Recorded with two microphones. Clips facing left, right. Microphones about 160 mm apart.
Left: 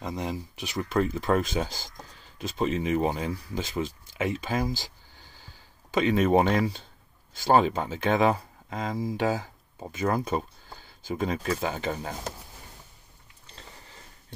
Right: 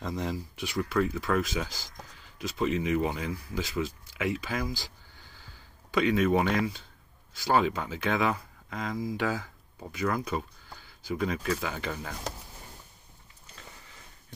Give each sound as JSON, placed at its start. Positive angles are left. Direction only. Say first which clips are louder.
{"t": 0.0, "sound": "speech", "louder": "left 1 dB", "side_deg": 15}
{"t": 5.9, "sound": "speech", "louder": "left 3 dB", "side_deg": 30}
{"t": 13.6, "sound": "a sound", "louder": "left 2 dB", "side_deg": 35}